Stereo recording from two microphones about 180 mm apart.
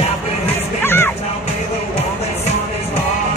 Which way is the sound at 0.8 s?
15° left (ahead or behind).